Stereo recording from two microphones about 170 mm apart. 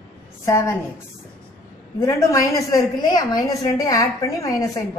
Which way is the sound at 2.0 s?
20° left (ahead or behind).